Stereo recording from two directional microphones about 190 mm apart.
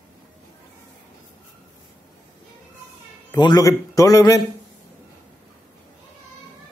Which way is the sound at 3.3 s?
20° left (ahead or behind).